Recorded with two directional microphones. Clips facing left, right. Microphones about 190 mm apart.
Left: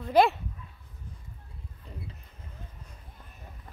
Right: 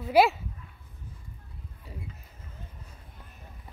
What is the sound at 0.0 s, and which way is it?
Speech, 5° right (ahead or behind).